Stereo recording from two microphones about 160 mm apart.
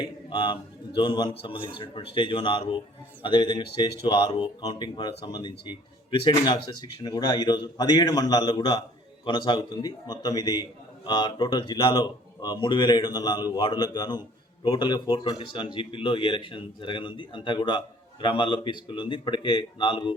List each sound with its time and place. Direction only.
0.0 s a man's voice: 30° left (ahead or behind)